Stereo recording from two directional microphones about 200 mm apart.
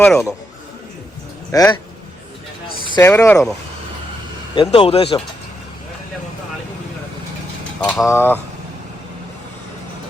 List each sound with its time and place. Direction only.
0.0 s a man's voice: centre (ahead or behind)
1.5 s speech: 15° left (ahead or behind)
2.9 s speech: 15° left (ahead or behind)
4.5 s speech: 25° left (ahead or behind)
7.8 s speech: 5° left (ahead or behind)